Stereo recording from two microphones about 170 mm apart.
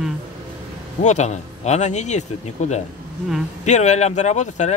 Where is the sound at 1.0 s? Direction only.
45° left (ahead or behind).